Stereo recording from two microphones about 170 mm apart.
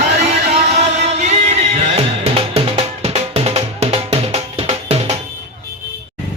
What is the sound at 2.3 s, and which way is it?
Music, 35° right (ahead or behind).